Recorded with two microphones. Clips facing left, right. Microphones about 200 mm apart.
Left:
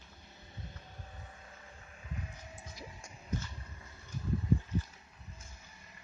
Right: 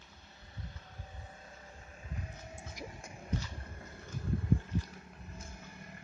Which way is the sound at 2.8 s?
55° right (ahead or behind).